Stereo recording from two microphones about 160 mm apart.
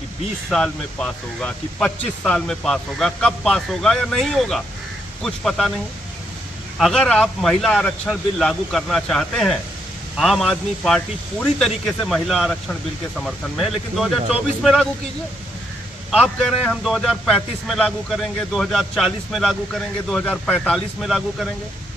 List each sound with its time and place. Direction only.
0.5 s a man's voice: 5° left (ahead or behind)
6.8 s a man's voice: 5° left (ahead or behind)
16.1 s a man's voice: 5° left (ahead or behind)